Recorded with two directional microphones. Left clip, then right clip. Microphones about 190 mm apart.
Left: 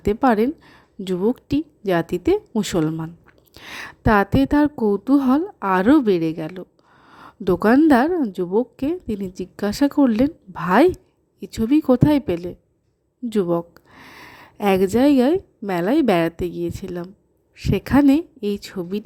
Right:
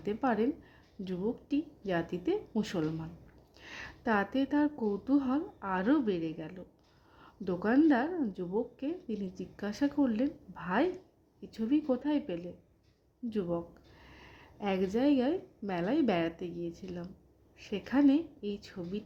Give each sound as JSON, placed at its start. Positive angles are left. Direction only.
{"t": 0.0, "sound": "a woman's voice", "side_deg": 40}
{"t": 13.3, "sound": "a sound", "side_deg": 40}
{"t": 14.9, "sound": "a woman's voice", "side_deg": 40}